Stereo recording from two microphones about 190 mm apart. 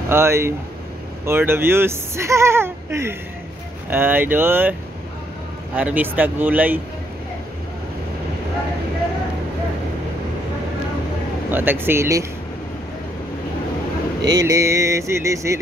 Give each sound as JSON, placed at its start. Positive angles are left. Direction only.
{"t": 0.1, "sound": "speech", "side_deg": -15}
{"t": 5.8, "sound": "speech", "side_deg": -10}
{"t": 11.5, "sound": "speech", "side_deg": -10}
{"t": 14.3, "sound": "speech", "side_deg": -15}